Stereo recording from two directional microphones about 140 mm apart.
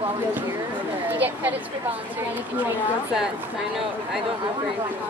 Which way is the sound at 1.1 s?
10° right (ahead or behind).